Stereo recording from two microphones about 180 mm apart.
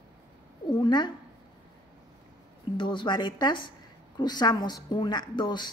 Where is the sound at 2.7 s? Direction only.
25° left (ahead or behind).